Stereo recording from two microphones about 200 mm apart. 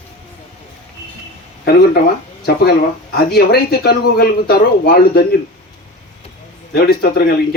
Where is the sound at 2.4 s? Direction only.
55° left (ahead or behind).